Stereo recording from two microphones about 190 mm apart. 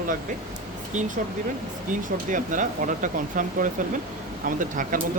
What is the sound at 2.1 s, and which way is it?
Speech, 45° right (ahead or behind).